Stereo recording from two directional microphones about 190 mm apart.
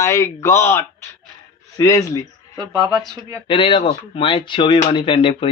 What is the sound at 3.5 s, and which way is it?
Speech, 30° left (ahead or behind).